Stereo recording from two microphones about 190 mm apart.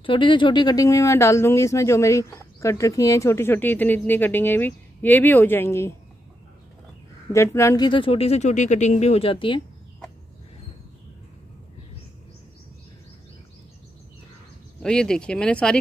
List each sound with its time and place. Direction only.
0.0 s speech: 25° left (ahead or behind)
7.3 s speech: 15° left (ahead or behind)
14.8 s speech: 5° left (ahead or behind)